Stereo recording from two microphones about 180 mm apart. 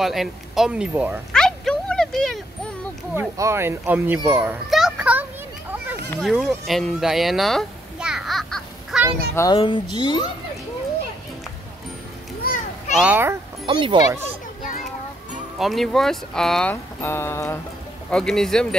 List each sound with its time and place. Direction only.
0.0 s speech: centre (ahead or behind)
1.3 s a sound: 5° left (ahead or behind)
3.2 s speech: 15° right (ahead or behind)
4.3 s a sound: 5° right (ahead or behind)
6.2 s a sound: centre (ahead or behind)
9.3 s speech: 15° left (ahead or behind)
12.4 s children playing: 45° left (ahead or behind)
12.9 s speech: 5° right (ahead or behind)
13.7 s speech: 30° right (ahead or behind)
15.6 s speech: centre (ahead or behind)